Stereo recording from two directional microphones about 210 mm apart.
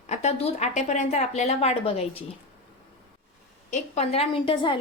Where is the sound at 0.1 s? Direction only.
30° left (ahead or behind).